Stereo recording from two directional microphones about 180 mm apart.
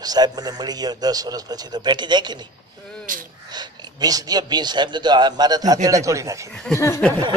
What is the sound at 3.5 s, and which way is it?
A man's voice, 25° right (ahead or behind).